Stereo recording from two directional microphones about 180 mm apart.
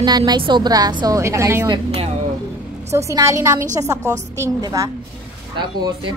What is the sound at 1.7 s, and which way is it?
Speech, 30° right (ahead or behind).